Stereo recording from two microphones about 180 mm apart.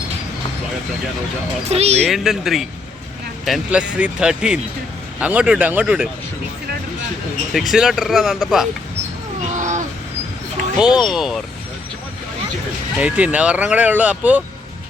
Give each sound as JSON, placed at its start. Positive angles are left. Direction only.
{"t": 1.7, "sound": "speech", "side_deg": -35}
{"t": 2.0, "sound": "speech", "side_deg": 0}
{"t": 7.5, "sound": "speech", "side_deg": 0}
{"t": 9.5, "sound": "a sound", "side_deg": -45}
{"t": 10.8, "sound": "speech", "side_deg": -5}
{"t": 13.0, "sound": "speech", "side_deg": -5}